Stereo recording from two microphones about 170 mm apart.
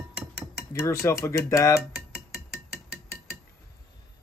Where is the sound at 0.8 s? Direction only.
15° left (ahead or behind).